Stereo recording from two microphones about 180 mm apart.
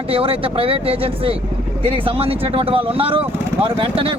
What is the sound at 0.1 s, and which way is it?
Speech, 30° right (ahead or behind).